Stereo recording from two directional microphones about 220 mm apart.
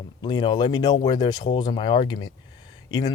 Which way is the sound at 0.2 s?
20° left (ahead or behind).